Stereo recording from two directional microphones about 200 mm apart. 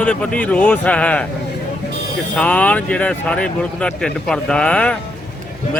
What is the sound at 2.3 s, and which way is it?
Speech, 5° left (ahead or behind).